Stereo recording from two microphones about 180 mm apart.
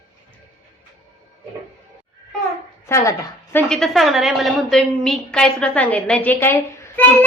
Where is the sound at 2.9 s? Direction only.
15° left (ahead or behind).